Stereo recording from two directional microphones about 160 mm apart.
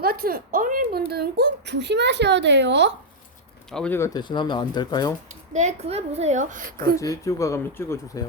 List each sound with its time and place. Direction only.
0.0 s speech: 70° right (ahead or behind); by 2.9 s 90° right
3.7 s speech: 5° left (ahead or behind)
3.9 s speech: 20° left (ahead or behind)
5.3 s speech: 45° right (ahead or behind)
7.0 s speech: 20° left (ahead or behind)